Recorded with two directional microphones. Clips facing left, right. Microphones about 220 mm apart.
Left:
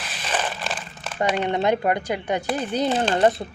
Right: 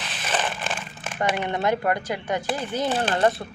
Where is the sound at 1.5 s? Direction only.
20° left (ahead or behind).